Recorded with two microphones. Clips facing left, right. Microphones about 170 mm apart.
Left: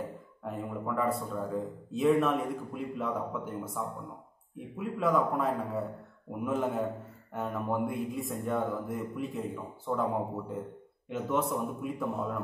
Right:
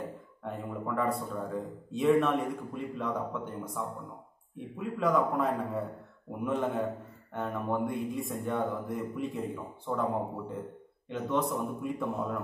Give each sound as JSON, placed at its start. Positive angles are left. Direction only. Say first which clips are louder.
{"t": 0.4, "sound": "a man's voice", "louder": "left 1 dB", "side_deg": 0}